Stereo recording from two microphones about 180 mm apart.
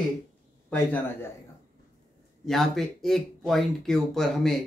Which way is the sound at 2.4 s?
Centre (ahead or behind).